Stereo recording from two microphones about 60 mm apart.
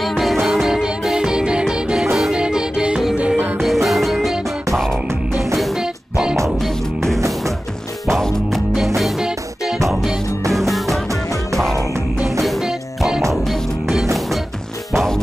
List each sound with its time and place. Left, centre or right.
0.0 s music: centre
3.6 s music: centre
5.8 s music: centre
8.1 s music: centre
10.5 s music: centre
12.4 s music: centre
12.6 s music: centre